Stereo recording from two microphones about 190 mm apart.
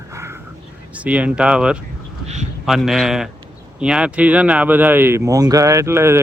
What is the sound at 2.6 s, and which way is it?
Speech, centre (ahead or behind).